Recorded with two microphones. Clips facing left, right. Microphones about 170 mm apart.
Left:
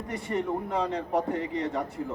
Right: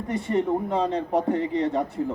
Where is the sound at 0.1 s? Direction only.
25° right (ahead or behind).